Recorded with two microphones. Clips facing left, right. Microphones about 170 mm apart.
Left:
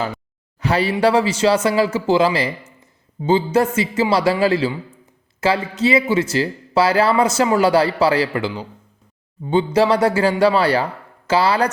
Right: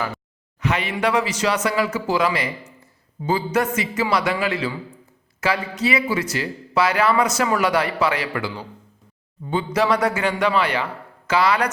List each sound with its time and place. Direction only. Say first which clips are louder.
0.6 s speech: left 5 dB; 35° left (ahead or behind)